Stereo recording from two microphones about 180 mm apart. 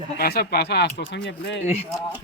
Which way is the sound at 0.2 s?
60° left (ahead or behind).